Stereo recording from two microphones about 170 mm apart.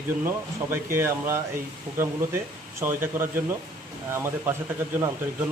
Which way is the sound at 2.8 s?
15° right (ahead or behind).